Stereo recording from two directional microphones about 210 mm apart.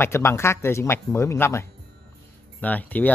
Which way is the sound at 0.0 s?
10° left (ahead or behind).